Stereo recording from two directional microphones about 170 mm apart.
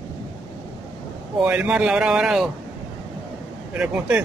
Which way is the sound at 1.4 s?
10° right (ahead or behind).